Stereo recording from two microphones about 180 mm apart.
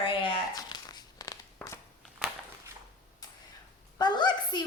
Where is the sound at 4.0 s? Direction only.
25° left (ahead or behind).